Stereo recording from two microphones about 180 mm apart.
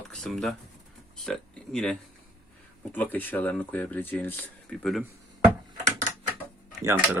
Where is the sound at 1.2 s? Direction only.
5° left (ahead or behind).